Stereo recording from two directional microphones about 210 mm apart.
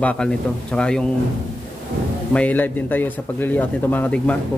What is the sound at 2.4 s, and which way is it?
A man's voice, 10° left (ahead or behind).